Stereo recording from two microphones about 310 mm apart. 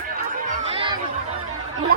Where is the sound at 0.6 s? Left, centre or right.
Centre.